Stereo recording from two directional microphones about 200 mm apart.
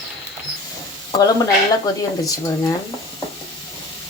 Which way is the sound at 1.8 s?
15° left (ahead or behind).